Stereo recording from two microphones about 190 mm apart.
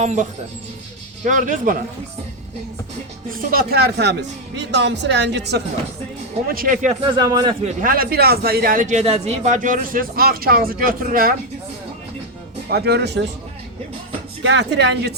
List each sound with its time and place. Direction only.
0.0 s speech: 40° right (ahead or behind)
3.3 s speech: 50° right (ahead or behind)
6.5 s speech: 45° right (ahead or behind)
7.1 s speech: 20° right (ahead or behind)
7.6 s speech: 45° right (ahead or behind)
12.7 s speech: 60° right (ahead or behind)
14.4 s speech: 70° right (ahead or behind)